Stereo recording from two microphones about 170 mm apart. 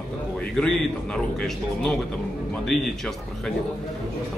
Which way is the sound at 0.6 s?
5° left (ahead or behind).